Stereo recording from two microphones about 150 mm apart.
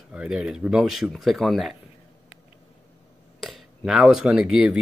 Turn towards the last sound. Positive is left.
turn(degrees=-5)  # may be behind; listen again after turning